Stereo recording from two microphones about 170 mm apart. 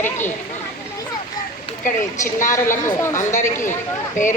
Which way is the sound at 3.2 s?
45° left (ahead or behind).